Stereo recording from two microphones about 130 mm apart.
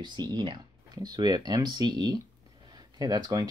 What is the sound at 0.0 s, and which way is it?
Speech, 35° right (ahead or behind).